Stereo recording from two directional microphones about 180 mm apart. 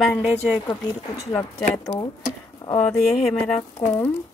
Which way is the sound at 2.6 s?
30° left (ahead or behind).